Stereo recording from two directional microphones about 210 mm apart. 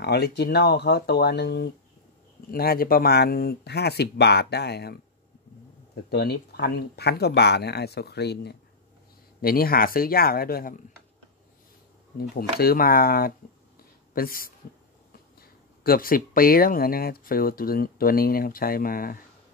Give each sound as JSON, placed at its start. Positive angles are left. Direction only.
{"t": 0.0, "sound": "speech", "side_deg": 50}
{"t": 6.0, "sound": "speech", "side_deg": 50}
{"t": 12.2, "sound": "speech", "side_deg": 50}